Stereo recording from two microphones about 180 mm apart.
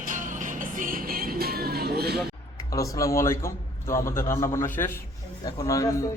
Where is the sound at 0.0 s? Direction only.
45° right (ahead or behind).